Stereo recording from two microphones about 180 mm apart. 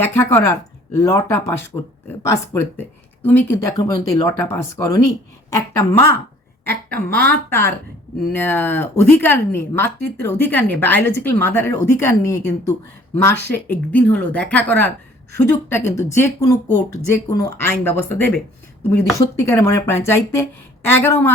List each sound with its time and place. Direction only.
0.0 s speech: 10° left (ahead or behind)
16.0 s speech: 15° left (ahead or behind)